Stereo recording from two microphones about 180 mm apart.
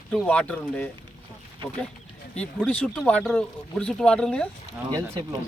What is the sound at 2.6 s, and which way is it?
Speech, 5° left (ahead or behind).